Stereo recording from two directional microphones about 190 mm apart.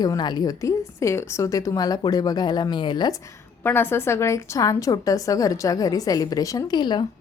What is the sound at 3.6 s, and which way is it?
A woman's voice, 10° left (ahead or behind).